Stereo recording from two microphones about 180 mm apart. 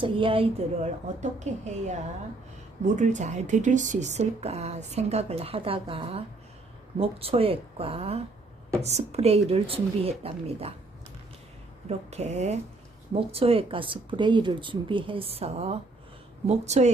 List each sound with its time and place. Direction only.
0.0 s speech: 30° right (ahead or behind)
1.2 s speech: 40° right (ahead or behind)
12.1 s speech: 35° right (ahead or behind)